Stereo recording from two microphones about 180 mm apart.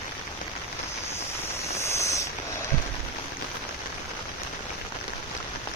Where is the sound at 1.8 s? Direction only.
15° left (ahead or behind).